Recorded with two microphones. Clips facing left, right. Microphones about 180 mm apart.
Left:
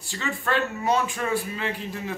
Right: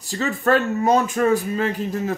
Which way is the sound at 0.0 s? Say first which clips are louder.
Right 8 dB; 40° right (ahead or behind).